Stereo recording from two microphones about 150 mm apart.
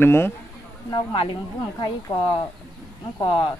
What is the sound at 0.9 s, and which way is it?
Speech, 35° left (ahead or behind).